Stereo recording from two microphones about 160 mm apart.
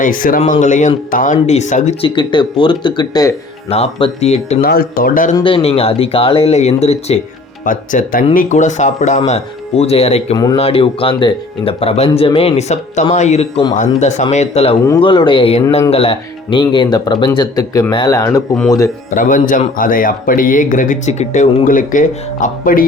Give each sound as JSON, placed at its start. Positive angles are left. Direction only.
{"t": 0.0, "sound": "a man's voice", "side_deg": 60}
{"t": 3.7, "sound": "speech", "side_deg": 35}
{"t": 4.6, "sound": "a man's voice", "side_deg": 65}
{"t": 5.3, "sound": "speech", "side_deg": 30}
{"t": 7.6, "sound": "speech", "side_deg": 55}
{"t": 10.3, "sound": "speech", "side_deg": 25}
{"t": 10.6, "sound": "speech", "side_deg": 35}
{"t": 19.1, "sound": "a man's voice", "side_deg": 55}